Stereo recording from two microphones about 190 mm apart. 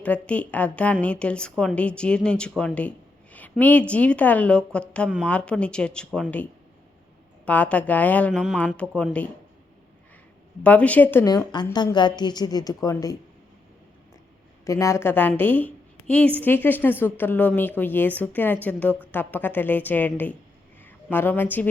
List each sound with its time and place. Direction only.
0.0 s a woman's voice: 5° left (ahead or behind)
7.4 s a woman's voice: 10° left (ahead or behind)
8.9 s a woman's voice: 5° right (ahead or behind)
10.6 s a woman's voice: 5° left (ahead or behind)
14.6 s a woman's voice: 15° left (ahead or behind)